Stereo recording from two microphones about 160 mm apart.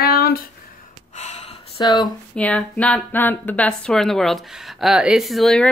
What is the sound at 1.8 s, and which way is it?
Speech, 25° left (ahead or behind).